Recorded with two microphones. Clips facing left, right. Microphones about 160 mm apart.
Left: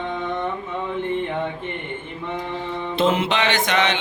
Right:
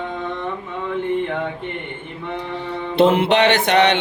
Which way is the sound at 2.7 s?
65° right (ahead or behind).